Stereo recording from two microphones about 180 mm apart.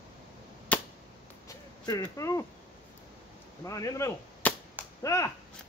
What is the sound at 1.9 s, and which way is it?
Speech, 20° left (ahead or behind).